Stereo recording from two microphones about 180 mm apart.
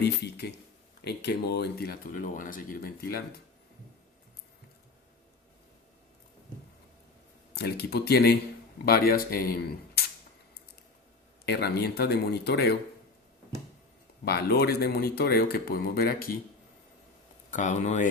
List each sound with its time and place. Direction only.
0.0 s speech: 65° left (ahead or behind)
7.5 s speech: 60° left (ahead or behind)
11.4 s speech: 65° left (ahead or behind)
14.3 s speech: 60° left (ahead or behind)
17.5 s speech: 45° left (ahead or behind)